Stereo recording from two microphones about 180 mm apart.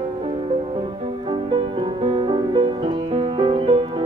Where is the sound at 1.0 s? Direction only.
30° right (ahead or behind).